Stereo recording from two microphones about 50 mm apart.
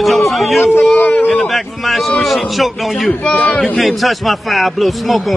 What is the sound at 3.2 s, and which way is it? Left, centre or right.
Speech, left.